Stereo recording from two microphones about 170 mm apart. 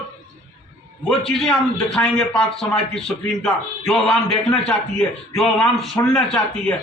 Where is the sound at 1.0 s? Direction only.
Centre (ahead or behind).